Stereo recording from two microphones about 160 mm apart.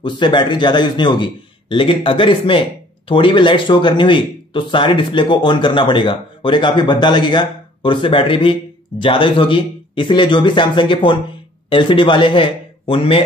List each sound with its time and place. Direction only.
0.0 s a man's voice: 30° left (ahead or behind)